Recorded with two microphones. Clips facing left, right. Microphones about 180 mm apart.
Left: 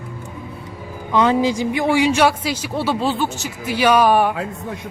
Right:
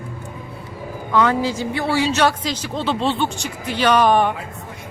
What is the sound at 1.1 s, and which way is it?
A man's voice, 20° left (ahead or behind).